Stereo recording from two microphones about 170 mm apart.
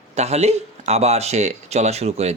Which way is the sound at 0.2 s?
40° right (ahead or behind).